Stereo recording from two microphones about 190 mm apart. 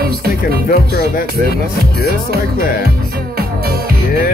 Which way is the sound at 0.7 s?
50° left (ahead or behind).